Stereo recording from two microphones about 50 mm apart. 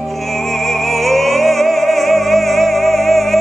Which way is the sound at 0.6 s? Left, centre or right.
Centre.